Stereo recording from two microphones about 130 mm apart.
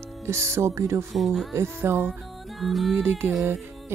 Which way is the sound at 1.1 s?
Centre (ahead or behind).